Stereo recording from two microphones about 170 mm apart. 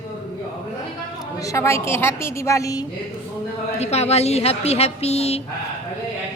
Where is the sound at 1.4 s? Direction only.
20° left (ahead or behind).